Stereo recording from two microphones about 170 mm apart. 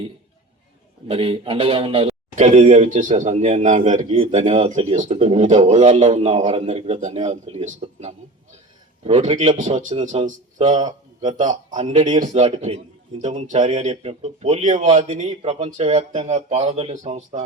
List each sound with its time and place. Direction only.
1.0 s a man's voice: 35° right (ahead or behind)